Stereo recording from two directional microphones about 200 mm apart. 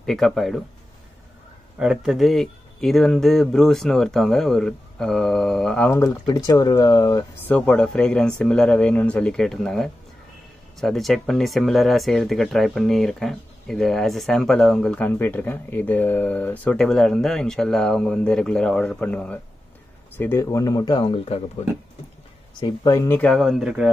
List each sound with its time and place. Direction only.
0.0 s speech: centre (ahead or behind)
1.8 s speech: 5° right (ahead or behind); by 7.2 s 20° left (ahead or behind)
7.4 s speech: 5° left (ahead or behind); by 21.4 s 25° left (ahead or behind)
22.6 s speech: 15° left (ahead or behind); by 23.9 s 5° right (ahead or behind)